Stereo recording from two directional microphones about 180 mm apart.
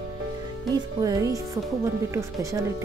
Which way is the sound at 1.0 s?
20° right (ahead or behind).